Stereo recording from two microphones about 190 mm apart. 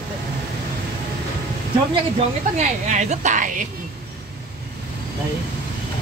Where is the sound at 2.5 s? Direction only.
40° right (ahead or behind).